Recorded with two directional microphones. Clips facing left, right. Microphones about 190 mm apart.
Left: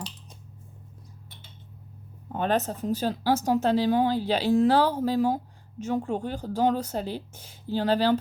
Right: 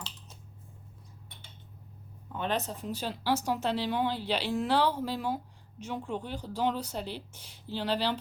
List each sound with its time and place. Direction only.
2.3 s speech: 45° left (ahead or behind)